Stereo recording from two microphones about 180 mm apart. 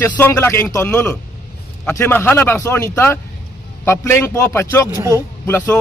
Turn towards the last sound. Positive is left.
turn(degrees=10)  # may be behind; listen again after turning